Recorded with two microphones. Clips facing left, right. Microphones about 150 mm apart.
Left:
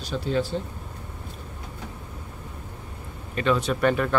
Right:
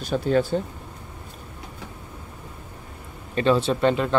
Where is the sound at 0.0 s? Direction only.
50° right (ahead or behind).